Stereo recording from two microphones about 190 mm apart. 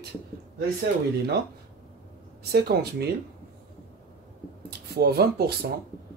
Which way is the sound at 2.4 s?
55° right (ahead or behind).